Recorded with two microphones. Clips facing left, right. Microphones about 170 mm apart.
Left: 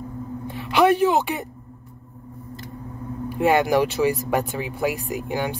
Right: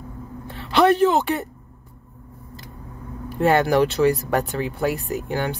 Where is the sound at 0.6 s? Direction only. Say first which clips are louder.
Right 1 dB; 10° left (ahead or behind).